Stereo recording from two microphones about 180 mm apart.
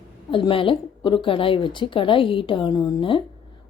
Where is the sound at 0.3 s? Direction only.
30° left (ahead or behind).